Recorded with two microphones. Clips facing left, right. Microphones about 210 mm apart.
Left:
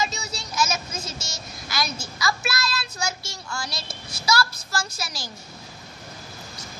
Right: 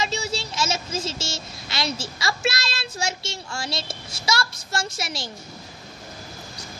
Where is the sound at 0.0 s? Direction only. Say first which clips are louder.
Right 3 dB; 30° right (ahead or behind).